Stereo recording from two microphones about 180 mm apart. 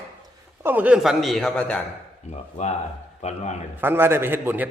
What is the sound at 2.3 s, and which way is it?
Speech, 35° left (ahead or behind).